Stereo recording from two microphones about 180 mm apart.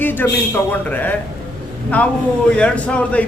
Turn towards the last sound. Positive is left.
turn(degrees=5)  # may be behind; listen again after turning